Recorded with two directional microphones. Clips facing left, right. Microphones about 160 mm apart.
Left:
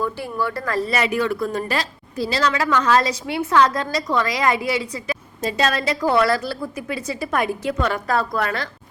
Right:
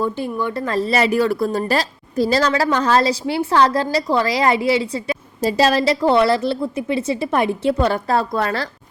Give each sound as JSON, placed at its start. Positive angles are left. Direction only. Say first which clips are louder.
{"t": 0.0, "sound": "speech", "louder": "right 3 dB", "side_deg": -20}